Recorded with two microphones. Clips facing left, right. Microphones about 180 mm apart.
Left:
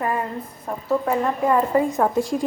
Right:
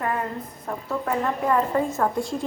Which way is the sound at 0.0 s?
5° left (ahead or behind).